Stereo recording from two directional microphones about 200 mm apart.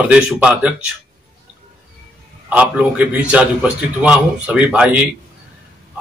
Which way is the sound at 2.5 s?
5° right (ahead or behind).